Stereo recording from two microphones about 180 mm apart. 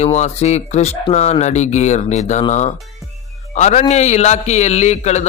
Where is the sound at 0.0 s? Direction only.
40° left (ahead or behind).